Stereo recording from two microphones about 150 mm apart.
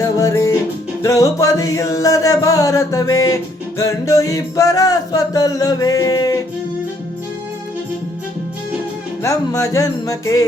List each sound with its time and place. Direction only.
0.0 s music: 20° left (ahead or behind)
9.2 s music: 20° left (ahead or behind)